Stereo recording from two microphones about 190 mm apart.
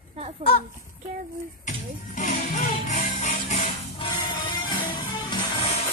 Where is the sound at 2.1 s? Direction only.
40° left (ahead or behind).